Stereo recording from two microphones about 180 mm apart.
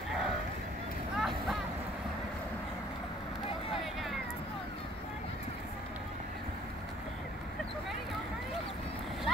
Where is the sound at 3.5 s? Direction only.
30° left (ahead or behind).